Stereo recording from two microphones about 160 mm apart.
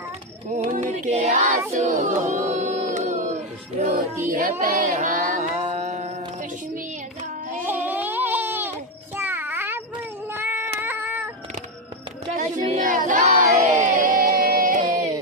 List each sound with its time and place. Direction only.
0.6 s choir: 45° right (ahead or behind)
4.3 s music: 55° right (ahead or behind)
7.6 s a sound: 10° right (ahead or behind)
10.3 s child singing: 15° right (ahead or behind)
12.6 s choir: 55° right (ahead or behind)
13.6 s a sound: 50° right (ahead or behind)